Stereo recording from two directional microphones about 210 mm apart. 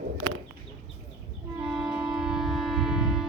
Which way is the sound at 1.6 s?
Centre (ahead or behind).